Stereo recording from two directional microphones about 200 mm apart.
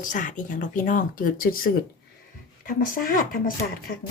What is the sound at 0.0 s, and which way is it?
Speech, 40° left (ahead or behind).